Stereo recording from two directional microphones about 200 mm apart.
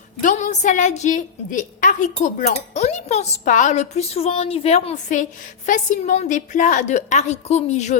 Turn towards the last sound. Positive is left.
turn(degrees=35)  # may be behind; listen again after turning